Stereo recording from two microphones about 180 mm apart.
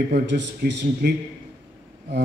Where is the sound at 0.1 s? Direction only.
70° right (ahead or behind).